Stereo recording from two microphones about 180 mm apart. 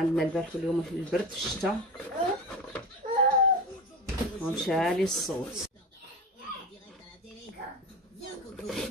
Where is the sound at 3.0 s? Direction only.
50° right (ahead or behind).